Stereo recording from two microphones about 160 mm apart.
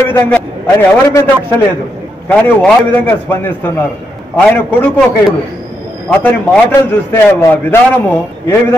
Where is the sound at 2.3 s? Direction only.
10° left (ahead or behind).